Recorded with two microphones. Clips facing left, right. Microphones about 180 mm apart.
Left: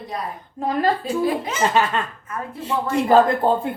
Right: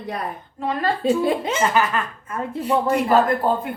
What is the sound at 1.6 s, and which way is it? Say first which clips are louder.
Speech: left 4 dB; 25° left (ahead or behind).